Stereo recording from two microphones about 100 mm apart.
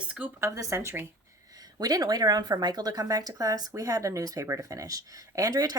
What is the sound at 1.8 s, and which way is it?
Speech, 40° right (ahead or behind).